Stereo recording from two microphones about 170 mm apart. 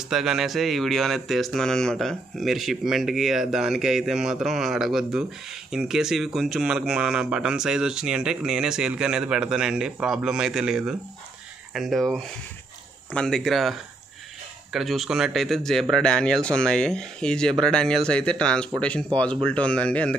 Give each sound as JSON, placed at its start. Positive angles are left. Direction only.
{"t": 0.0, "sound": "speech", "side_deg": 0}